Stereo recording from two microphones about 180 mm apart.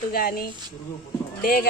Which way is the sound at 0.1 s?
55° left (ahead or behind).